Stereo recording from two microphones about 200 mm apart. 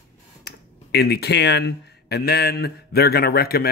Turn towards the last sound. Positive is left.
turn(degrees=50)  # may be behind; listen again after turning